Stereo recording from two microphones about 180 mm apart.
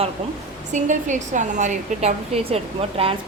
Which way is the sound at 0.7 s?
45° right (ahead or behind).